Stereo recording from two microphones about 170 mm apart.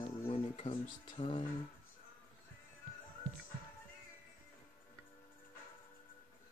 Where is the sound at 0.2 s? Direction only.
35° left (ahead or behind).